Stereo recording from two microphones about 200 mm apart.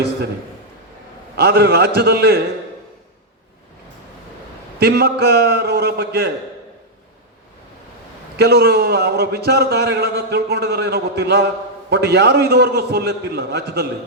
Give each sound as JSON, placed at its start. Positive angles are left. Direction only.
{"t": 1.4, "sound": "a man's voice", "side_deg": -50}
{"t": 4.8, "sound": "a man's voice", "side_deg": -50}
{"t": 8.4, "sound": "a man's voice", "side_deg": -55}